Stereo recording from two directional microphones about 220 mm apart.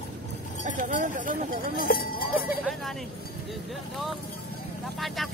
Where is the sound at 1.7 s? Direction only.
40° left (ahead or behind).